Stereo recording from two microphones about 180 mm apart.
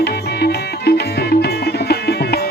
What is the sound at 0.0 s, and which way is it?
Music, 65° left (ahead or behind).